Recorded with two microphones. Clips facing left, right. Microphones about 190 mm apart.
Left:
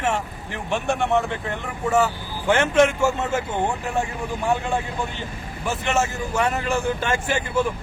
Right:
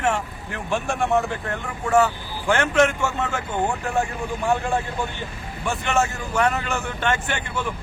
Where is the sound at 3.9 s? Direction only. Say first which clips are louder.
Right 1 dB; centre (ahead or behind).